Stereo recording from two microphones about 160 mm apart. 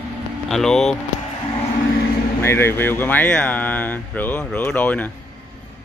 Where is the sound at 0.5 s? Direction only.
Centre (ahead or behind).